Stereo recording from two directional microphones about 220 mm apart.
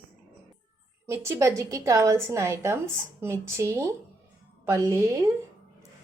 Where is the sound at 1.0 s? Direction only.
15° right (ahead or behind).